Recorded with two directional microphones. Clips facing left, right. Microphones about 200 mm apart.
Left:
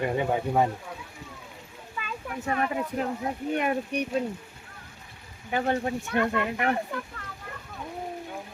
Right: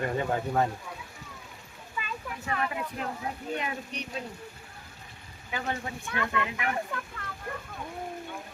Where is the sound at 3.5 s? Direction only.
55° left (ahead or behind).